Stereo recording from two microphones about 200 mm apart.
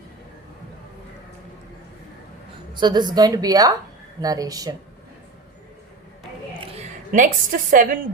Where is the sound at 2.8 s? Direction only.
20° right (ahead or behind).